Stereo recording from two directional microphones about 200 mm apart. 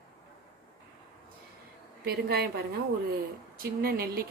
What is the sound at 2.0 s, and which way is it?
A woman's voice, 50° right (ahead or behind).